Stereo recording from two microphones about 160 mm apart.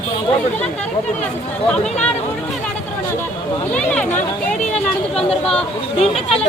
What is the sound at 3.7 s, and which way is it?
Speech, 10° left (ahead or behind).